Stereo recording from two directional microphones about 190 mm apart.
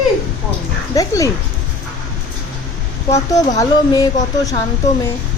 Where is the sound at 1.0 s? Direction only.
15° left (ahead or behind).